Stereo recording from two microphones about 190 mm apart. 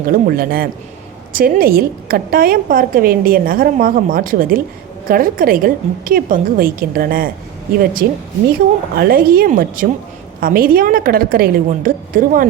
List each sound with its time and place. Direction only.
0.1 s a woman's voice: 50° right (ahead or behind)